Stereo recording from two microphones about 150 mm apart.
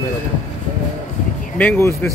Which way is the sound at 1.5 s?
10° left (ahead or behind).